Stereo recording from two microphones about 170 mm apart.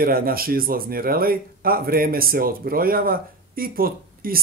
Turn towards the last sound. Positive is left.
turn(degrees=-60)  # may be behind; listen again after turning